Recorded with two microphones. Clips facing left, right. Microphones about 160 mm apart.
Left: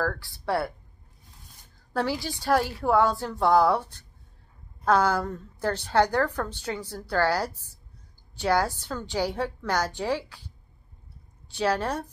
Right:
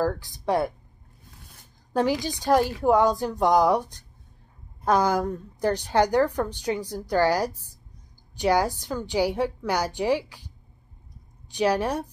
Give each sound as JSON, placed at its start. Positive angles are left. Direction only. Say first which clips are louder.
{"t": 0.0, "sound": "a woman's voice", "louder": "right 4 dB", "side_deg": -15}
{"t": 2.0, "sound": "a woman's voice", "louder": "right 4 dB", "side_deg": -15}
{"t": 11.5, "sound": "a woman's voice", "louder": "right 3 dB", "side_deg": -15}